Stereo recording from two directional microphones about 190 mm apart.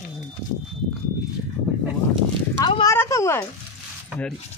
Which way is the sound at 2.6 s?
20° left (ahead or behind).